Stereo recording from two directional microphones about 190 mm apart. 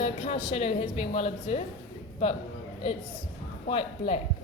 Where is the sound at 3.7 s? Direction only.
30° left (ahead or behind).